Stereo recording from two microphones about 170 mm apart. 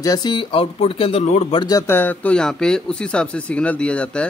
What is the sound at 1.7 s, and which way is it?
Speech, 15° left (ahead or behind).